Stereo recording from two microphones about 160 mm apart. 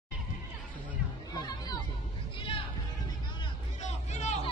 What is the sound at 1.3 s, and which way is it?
Music, 25° left (ahead or behind).